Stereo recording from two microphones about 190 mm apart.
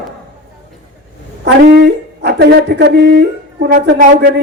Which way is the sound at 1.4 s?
60° right (ahead or behind).